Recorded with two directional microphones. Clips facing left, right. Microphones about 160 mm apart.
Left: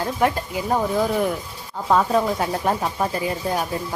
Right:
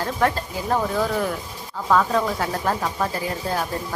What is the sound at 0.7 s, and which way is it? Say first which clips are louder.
Speech: left 1 dB; 15° left (ahead or behind).